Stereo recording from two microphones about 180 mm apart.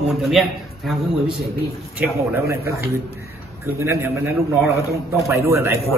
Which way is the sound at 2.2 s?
15° right (ahead or behind).